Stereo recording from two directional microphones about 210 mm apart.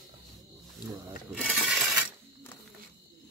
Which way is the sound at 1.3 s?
5° left (ahead or behind).